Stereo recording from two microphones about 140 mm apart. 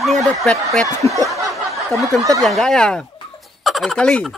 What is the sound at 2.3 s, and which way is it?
Speech, centre (ahead or behind).